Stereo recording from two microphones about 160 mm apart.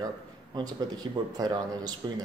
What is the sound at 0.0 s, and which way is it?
A man's voice, 25° right (ahead or behind).